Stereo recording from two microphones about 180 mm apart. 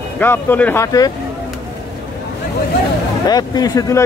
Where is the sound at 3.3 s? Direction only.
20° left (ahead or behind).